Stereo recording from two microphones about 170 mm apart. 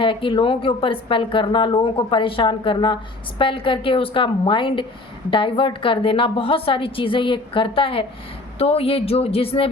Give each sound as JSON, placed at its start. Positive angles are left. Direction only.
{"t": 0.0, "sound": "a woman's voice", "side_deg": 30}